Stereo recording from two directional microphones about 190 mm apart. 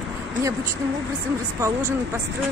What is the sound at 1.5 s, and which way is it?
Speech, 15° right (ahead or behind).